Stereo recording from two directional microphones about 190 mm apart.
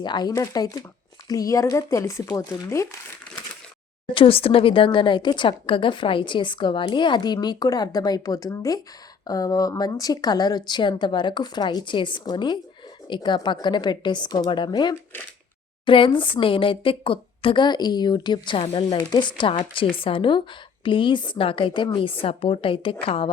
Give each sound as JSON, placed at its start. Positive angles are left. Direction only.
{"t": 0.0, "sound": "a woman's voice", "side_deg": 20}
{"t": 4.1, "sound": "a woman's voice", "side_deg": 30}